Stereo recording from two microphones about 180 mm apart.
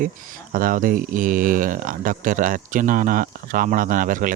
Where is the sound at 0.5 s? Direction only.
50° right (ahead or behind).